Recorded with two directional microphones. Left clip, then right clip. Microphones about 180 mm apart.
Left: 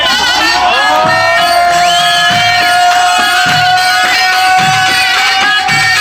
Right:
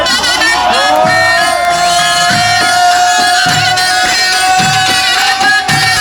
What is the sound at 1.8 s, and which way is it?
Music, 40° left (ahead or behind).